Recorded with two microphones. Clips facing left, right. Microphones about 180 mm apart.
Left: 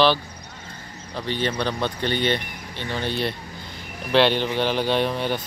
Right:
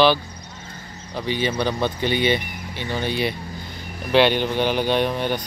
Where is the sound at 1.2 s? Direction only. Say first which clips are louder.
Right 2 dB; 5° right (ahead or behind).